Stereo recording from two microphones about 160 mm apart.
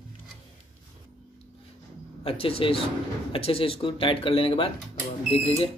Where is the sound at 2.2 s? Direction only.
35° left (ahead or behind).